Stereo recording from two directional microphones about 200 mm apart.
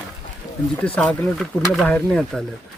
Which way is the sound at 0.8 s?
5° left (ahead or behind).